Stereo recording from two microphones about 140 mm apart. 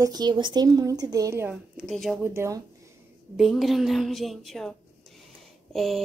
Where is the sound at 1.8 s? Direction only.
Centre (ahead or behind).